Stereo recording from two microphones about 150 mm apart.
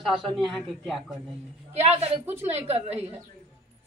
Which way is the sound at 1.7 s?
45° right (ahead or behind).